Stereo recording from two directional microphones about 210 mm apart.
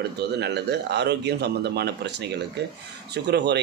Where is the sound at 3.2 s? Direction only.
55° right (ahead or behind).